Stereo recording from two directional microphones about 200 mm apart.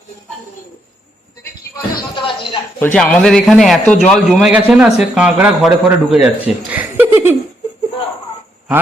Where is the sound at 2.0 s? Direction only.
25° left (ahead or behind).